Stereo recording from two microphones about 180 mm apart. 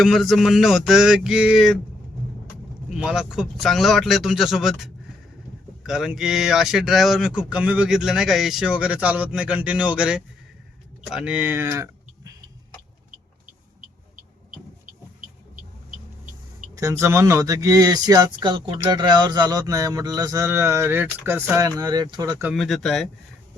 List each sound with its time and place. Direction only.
0.0 s speech: centre (ahead or behind)
2.9 s speech: 5° right (ahead or behind)
16.7 s speech: 15° right (ahead or behind)
22.5 s speech: centre (ahead or behind)